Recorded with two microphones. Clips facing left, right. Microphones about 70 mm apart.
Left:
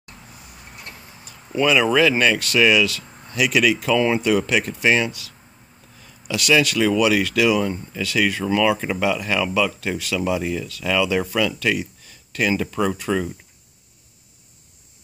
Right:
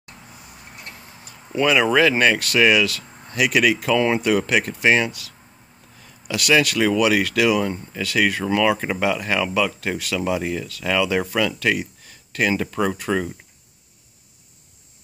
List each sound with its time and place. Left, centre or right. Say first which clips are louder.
1.6 s speech: even; right
6.2 s speech: even; right